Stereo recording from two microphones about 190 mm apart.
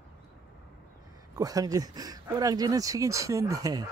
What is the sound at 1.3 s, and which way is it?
Speech, 20° right (ahead or behind).